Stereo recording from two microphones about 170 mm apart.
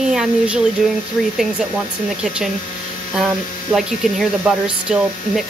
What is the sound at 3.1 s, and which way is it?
Speech, 5° right (ahead or behind).